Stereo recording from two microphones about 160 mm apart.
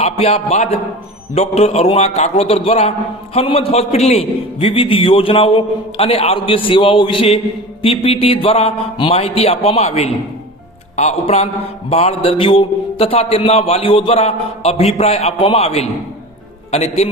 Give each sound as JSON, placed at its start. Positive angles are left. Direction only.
{"t": 0.0, "sound": "a man's voice", "side_deg": 40}